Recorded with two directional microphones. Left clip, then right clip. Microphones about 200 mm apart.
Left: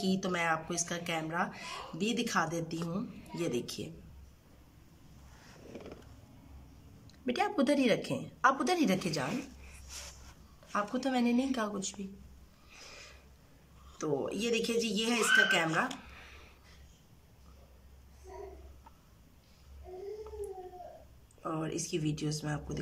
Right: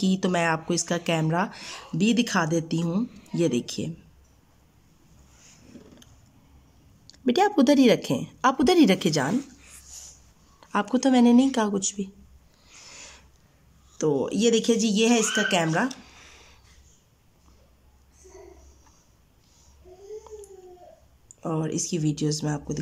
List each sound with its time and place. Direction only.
0.0 s speech: 35° right (ahead or behind)
7.1 s speech: 35° right (ahead or behind)
10.7 s speech: 40° right (ahead or behind)
13.9 s speech: 35° right (ahead or behind)
16.0 s a sound: centre (ahead or behind)
21.4 s speech: 30° right (ahead or behind)